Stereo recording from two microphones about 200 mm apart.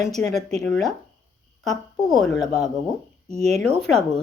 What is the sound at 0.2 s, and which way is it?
Speech, centre (ahead or behind).